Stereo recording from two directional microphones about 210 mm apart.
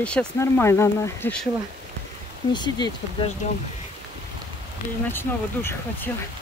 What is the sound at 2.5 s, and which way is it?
Speech, 20° left (ahead or behind).